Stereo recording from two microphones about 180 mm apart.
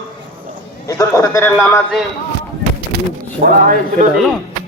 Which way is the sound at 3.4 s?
55° right (ahead or behind).